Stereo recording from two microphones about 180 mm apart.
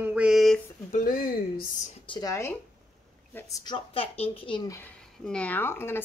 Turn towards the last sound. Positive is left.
turn(degrees=15)  # may be behind; listen again after turning